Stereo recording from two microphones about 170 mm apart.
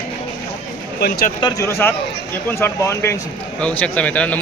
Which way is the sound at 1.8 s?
15° left (ahead or behind).